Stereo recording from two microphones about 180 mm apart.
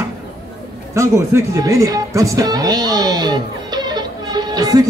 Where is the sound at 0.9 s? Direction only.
15° right (ahead or behind).